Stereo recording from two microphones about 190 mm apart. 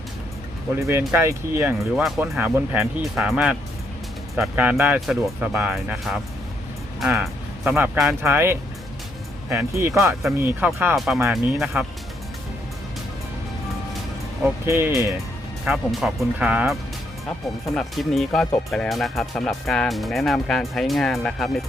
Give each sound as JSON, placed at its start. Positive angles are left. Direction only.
{"t": 0.9, "sound": "speech", "side_deg": -15}
{"t": 14.7, "sound": "speech", "side_deg": -10}
{"t": 15.6, "sound": "speech", "side_deg": 0}
{"t": 17.7, "sound": "speech", "side_deg": 0}